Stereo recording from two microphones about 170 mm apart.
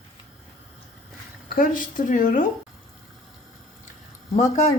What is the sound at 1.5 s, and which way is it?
Speech, 55° left (ahead or behind).